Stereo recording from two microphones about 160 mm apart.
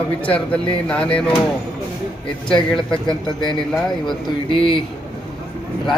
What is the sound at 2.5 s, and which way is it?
Speech, 5° left (ahead or behind).